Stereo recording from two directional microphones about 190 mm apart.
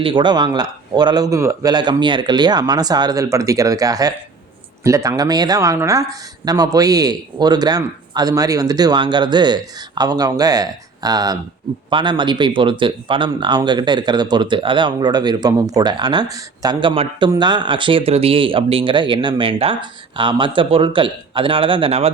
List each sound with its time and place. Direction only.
0.0 s speech: 25° right (ahead or behind)